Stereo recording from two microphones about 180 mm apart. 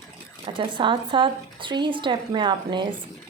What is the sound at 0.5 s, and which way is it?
A woman's voice, 25° right (ahead or behind).